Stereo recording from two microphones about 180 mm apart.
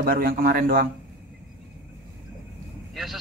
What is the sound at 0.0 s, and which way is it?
Speech, 55° right (ahead or behind).